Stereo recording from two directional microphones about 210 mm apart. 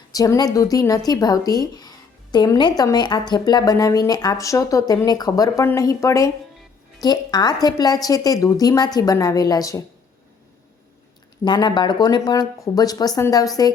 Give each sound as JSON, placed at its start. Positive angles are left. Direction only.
{"t": 0.1, "sound": "speech", "side_deg": 15}
{"t": 11.4, "sound": "speech", "side_deg": 20}